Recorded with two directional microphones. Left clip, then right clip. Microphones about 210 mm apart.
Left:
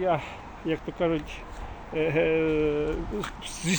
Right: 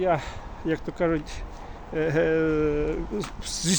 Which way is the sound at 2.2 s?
65° right (ahead or behind).